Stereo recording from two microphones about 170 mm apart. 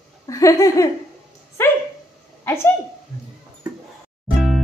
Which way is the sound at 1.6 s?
15° left (ahead or behind).